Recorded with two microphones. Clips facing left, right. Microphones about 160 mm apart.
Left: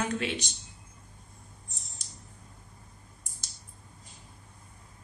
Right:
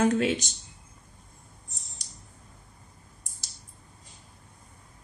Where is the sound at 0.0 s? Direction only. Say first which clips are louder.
Right 8 dB; 45° right (ahead or behind).